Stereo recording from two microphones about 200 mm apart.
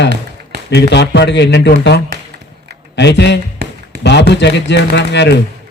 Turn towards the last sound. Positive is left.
turn(degrees=60)  # may be behind; listen again after turning